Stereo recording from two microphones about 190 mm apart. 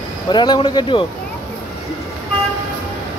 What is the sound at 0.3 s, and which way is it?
Speech, 25° left (ahead or behind).